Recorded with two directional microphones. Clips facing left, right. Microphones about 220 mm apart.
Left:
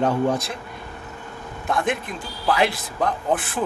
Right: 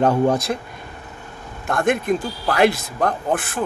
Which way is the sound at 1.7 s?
45° right (ahead or behind).